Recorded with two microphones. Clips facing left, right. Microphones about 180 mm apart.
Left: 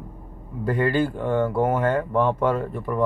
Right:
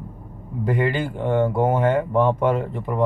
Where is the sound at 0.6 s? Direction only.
20° right (ahead or behind).